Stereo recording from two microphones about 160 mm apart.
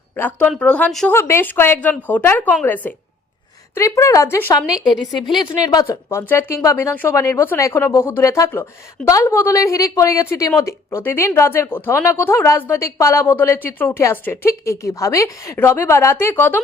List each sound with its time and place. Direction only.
0.2 s a woman's voice: 10° left (ahead or behind)
4.8 s a woman's voice: 25° left (ahead or behind)